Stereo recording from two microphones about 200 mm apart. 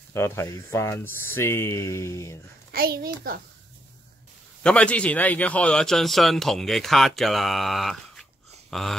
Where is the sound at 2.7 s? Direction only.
50° right (ahead or behind).